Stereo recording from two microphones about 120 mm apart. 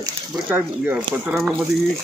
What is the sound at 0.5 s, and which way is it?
Speech, 15° right (ahead or behind).